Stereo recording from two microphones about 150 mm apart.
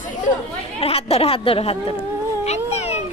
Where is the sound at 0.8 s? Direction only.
40° left (ahead or behind).